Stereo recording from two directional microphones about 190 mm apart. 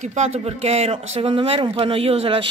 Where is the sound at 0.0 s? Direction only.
35° right (ahead or behind).